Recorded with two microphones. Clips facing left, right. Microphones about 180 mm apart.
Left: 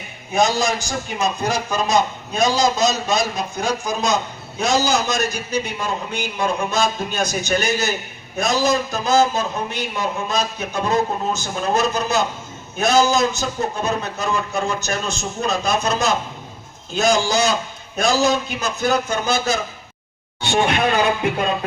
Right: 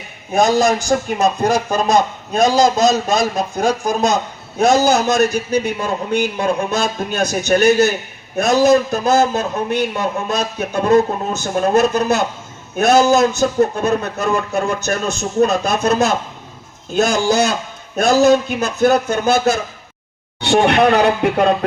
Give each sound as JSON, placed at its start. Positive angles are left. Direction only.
{"t": 0.3, "sound": "a man's voice", "side_deg": -55}
{"t": 20.7, "sound": "speech", "side_deg": -70}